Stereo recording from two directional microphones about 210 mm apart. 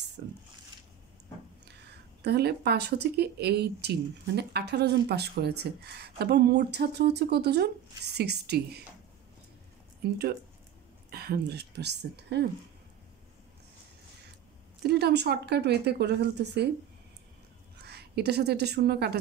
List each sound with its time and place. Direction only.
0.2 s a sound: 50° right (ahead or behind)
2.2 s speech: 50° right (ahead or behind)
10.0 s speech: 50° right (ahead or behind)
14.8 s speech: 50° right (ahead or behind)
17.8 s a woman's voice: 50° right (ahead or behind)